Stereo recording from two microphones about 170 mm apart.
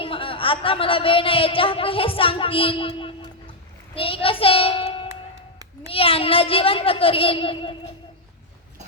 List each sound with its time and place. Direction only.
0.0 s a child's voice: 30° left (ahead or behind)